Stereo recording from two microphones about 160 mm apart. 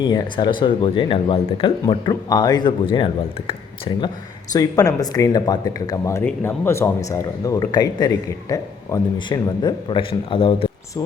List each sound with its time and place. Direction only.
0.0 s a man's voice: 25° left (ahead or behind)